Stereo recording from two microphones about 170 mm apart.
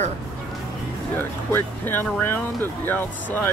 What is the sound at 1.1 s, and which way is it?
Speech, 10° left (ahead or behind).